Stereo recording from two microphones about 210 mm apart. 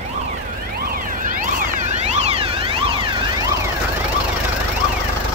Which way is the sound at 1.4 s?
35° right (ahead or behind).